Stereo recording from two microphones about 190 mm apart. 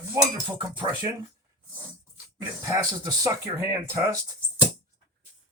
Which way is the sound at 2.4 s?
20° right (ahead or behind).